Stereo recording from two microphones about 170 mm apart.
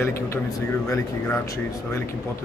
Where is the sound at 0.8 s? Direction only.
15° left (ahead or behind).